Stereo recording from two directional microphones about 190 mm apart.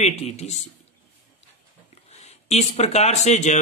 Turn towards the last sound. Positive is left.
turn(degrees=35)  # may be behind; listen again after turning